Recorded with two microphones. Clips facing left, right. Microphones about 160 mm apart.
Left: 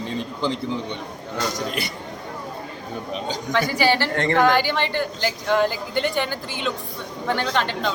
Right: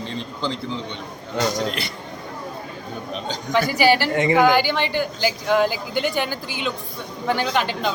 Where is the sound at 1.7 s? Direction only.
15° left (ahead or behind).